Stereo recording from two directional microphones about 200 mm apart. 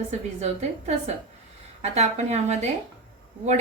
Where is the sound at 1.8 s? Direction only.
35° right (ahead or behind).